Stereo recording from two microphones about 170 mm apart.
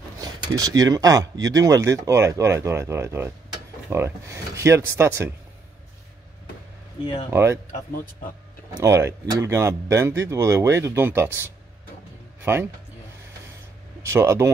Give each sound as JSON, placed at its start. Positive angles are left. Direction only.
{"t": 0.2, "sound": "speech", "side_deg": -20}
{"t": 8.8, "sound": "speech", "side_deg": -15}
{"t": 14.0, "sound": "speech", "side_deg": -15}